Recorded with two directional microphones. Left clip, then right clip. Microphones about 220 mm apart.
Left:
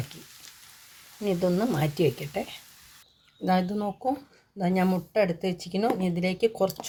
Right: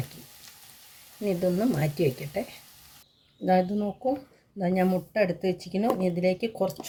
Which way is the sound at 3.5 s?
45° left (ahead or behind).